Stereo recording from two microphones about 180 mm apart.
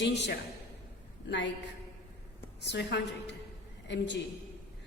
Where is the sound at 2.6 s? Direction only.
70° left (ahead or behind).